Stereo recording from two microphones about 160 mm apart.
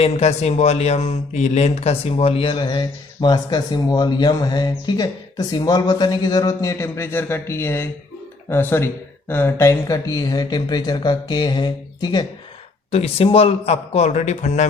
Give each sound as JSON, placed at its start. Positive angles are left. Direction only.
{"t": 0.0, "sound": "speech", "side_deg": 40}
{"t": 12.9, "sound": "a man's voice", "side_deg": 40}